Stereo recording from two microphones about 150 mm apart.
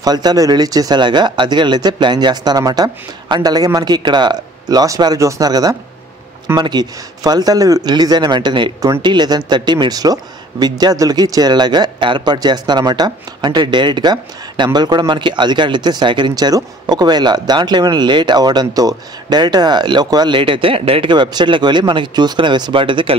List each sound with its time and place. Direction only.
0.0 s a man's voice: 25° right (ahead or behind)